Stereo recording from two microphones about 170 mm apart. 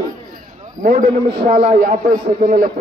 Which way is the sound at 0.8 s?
50° right (ahead or behind).